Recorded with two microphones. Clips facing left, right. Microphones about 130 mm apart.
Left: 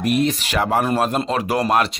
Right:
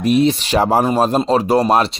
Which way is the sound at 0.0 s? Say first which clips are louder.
Right 5 dB; 55° left (ahead or behind).